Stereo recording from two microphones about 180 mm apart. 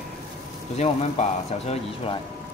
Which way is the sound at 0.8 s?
35° left (ahead or behind).